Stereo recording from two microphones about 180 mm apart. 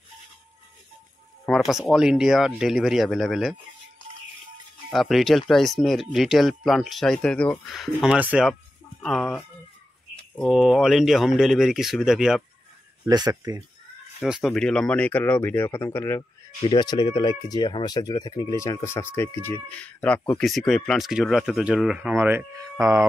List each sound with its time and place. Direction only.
1.4 s speech: centre (ahead or behind)
4.9 s speech: centre (ahead or behind)
10.4 s speech: centre (ahead or behind)
13.1 s speech: 20° right (ahead or behind)
14.2 s speech: centre (ahead or behind)
16.6 s speech: 25° left (ahead or behind); by 23.0 s 15° right (ahead or behind)